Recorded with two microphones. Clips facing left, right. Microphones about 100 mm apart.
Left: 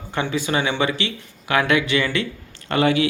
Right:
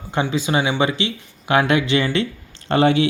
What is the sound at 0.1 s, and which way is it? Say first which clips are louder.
Speech: right 2 dB; 20° right (ahead or behind).